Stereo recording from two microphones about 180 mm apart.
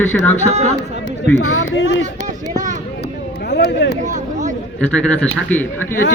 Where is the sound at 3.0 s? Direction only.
65° left (ahead or behind).